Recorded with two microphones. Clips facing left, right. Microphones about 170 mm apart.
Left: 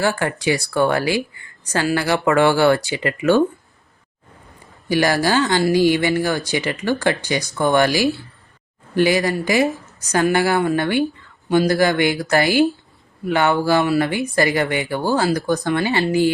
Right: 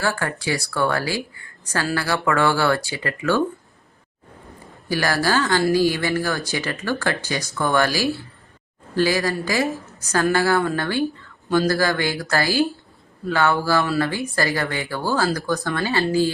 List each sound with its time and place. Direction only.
0.0 s a woman's voice: 20° left (ahead or behind)
4.9 s a woman's voice: 20° left (ahead or behind)